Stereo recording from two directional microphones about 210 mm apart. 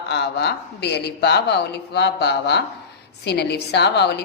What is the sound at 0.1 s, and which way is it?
A woman's voice, 55° left (ahead or behind).